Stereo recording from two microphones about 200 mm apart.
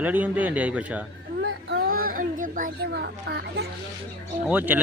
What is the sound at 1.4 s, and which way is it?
A child's voice, 60° right (ahead or behind).